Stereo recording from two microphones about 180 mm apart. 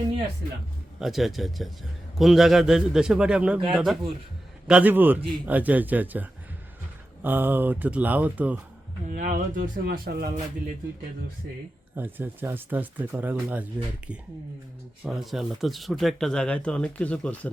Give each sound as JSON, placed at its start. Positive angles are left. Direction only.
{"t": 0.9, "sound": "speech", "side_deg": 0}
{"t": 9.0, "sound": "speech", "side_deg": -45}
{"t": 11.9, "sound": "speech", "side_deg": -10}
{"t": 15.0, "sound": "speech", "side_deg": 0}